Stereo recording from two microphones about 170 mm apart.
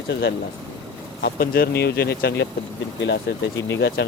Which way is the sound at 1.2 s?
65° left (ahead or behind).